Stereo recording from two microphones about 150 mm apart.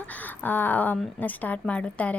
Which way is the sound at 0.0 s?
10° left (ahead or behind).